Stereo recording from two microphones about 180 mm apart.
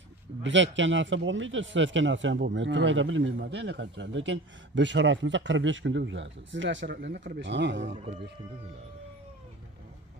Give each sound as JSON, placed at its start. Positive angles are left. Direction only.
{"t": 0.4, "sound": "speech", "side_deg": -90}
{"t": 7.9, "sound": "speech", "side_deg": -40}